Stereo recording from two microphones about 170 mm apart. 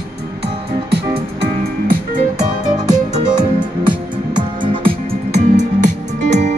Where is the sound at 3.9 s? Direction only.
30° right (ahead or behind).